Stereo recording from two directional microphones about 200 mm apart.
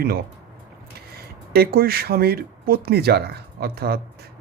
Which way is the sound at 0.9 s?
50° right (ahead or behind).